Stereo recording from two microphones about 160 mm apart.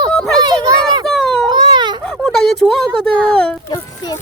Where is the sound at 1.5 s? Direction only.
30° right (ahead or behind).